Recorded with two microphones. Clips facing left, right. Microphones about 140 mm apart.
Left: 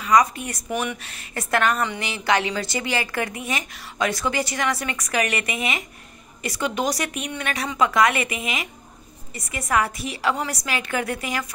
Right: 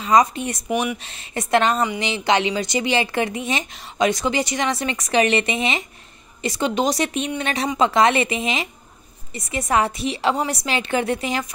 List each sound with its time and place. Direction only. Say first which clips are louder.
0.0 s speech: right 2 dB; 25° right (ahead or behind)